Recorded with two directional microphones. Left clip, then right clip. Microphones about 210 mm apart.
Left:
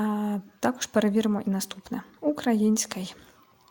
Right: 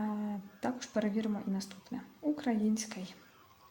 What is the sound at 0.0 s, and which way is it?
A woman's voice, 30° left (ahead or behind).